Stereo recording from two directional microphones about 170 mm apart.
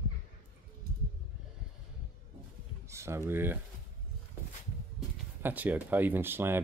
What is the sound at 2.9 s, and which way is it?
Speech, 15° right (ahead or behind).